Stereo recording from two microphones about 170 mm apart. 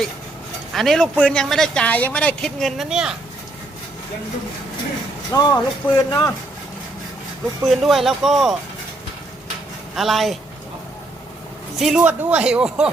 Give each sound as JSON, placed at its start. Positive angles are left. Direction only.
{"t": 0.7, "sound": "speech", "side_deg": 0}
{"t": 5.3, "sound": "speech", "side_deg": 25}
{"t": 7.7, "sound": "speech", "side_deg": 0}
{"t": 9.9, "sound": "speech", "side_deg": 0}
{"t": 11.8, "sound": "speech", "side_deg": -5}